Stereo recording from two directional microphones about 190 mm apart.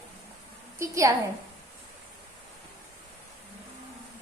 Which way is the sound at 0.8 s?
15° right (ahead or behind).